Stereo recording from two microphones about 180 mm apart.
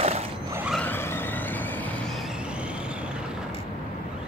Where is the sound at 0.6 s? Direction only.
5° left (ahead or behind).